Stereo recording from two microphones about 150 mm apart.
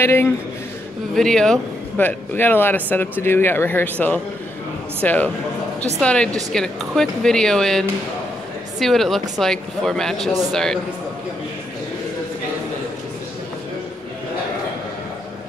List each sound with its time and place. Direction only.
0.0 s speech: 15° left (ahead or behind)
1.1 s speech: 5° left (ahead or behind)